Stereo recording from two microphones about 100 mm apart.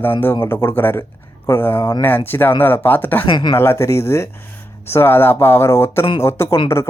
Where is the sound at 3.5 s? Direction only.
25° left (ahead or behind).